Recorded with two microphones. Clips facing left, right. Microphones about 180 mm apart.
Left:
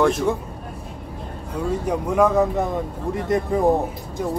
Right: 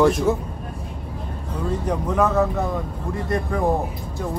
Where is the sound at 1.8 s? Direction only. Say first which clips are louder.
Left 2 dB; 10° left (ahead or behind).